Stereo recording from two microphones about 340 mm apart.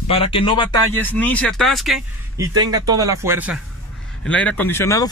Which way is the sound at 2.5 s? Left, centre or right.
Centre.